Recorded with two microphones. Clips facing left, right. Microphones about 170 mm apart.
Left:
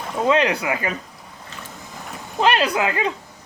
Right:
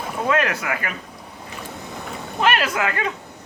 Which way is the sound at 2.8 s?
30° left (ahead or behind).